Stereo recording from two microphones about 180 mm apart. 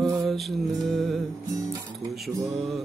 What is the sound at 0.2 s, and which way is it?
Mantra, centre (ahead or behind).